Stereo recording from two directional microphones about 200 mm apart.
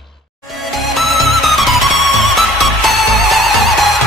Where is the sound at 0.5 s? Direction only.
Centre (ahead or behind).